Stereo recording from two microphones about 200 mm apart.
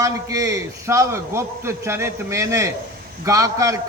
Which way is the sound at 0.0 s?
15° right (ahead or behind).